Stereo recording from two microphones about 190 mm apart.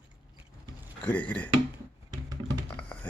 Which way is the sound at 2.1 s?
20° right (ahead or behind).